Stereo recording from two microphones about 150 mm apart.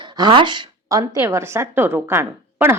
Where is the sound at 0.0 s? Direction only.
30° right (ahead or behind).